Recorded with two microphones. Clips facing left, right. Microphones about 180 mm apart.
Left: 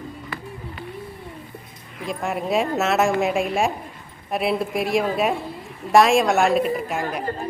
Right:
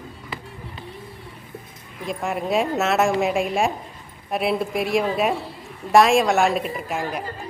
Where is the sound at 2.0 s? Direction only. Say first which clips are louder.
Even; centre (ahead or behind).